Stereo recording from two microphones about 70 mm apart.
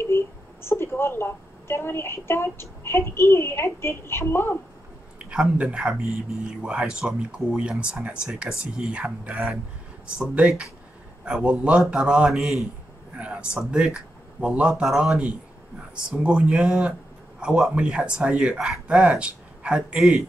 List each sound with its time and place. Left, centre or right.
0.0 s a woman's voice: left
5.2 s a man's voice: centre
13.2 s a man's voice: centre